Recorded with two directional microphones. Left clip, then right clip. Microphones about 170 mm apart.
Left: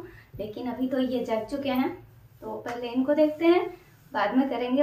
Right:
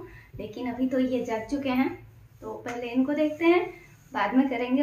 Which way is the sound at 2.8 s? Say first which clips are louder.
Left 3 dB; 5° right (ahead or behind).